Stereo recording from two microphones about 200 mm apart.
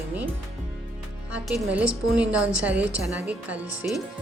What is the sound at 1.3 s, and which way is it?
Speech, 5° right (ahead or behind).